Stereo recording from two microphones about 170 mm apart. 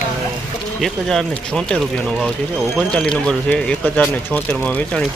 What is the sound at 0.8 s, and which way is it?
Speech, centre (ahead or behind).